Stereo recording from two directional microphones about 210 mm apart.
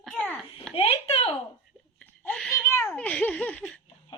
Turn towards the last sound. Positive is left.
turn(degrees=5)  # may be behind; listen again after turning